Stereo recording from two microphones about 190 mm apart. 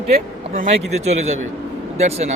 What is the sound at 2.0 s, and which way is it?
Speech, 35° right (ahead or behind).